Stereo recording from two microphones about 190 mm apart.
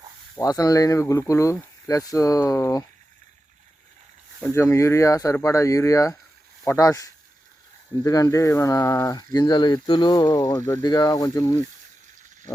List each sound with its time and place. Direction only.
0.3 s speech: 20° left (ahead or behind)
4.5 s speech: 15° left (ahead or behind)